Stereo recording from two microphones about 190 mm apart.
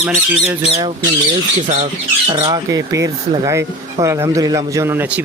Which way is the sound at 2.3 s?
25° right (ahead or behind).